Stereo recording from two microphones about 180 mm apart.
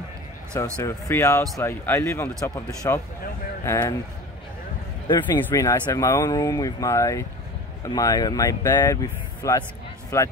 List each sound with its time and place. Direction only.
0.8 s speech: 15° left (ahead or behind)
5.0 s speech: 25° left (ahead or behind)